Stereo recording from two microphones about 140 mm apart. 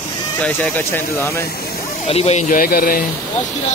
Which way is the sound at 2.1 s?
50° left (ahead or behind).